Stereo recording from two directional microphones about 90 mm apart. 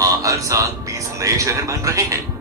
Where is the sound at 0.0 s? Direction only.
35° right (ahead or behind).